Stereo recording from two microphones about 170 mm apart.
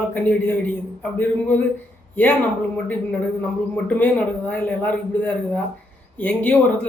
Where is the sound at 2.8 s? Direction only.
10° left (ahead or behind).